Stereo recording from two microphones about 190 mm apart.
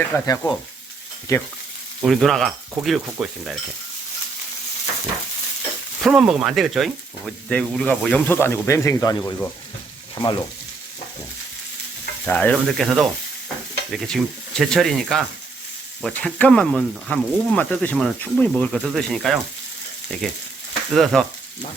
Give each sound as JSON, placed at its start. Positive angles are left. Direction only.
{"t": 0.1, "sound": "frying", "side_deg": 20}
{"t": 1.3, "sound": "stir", "side_deg": 15}
{"t": 2.0, "sound": "speech", "side_deg": 0}
{"t": 6.0, "sound": "speech", "side_deg": -5}
{"t": 10.2, "sound": "frying", "side_deg": 25}
{"t": 12.2, "sound": "stir", "side_deg": 10}
{"t": 12.6, "sound": "speech", "side_deg": 0}
{"t": 20.9, "sound": "speech", "side_deg": 0}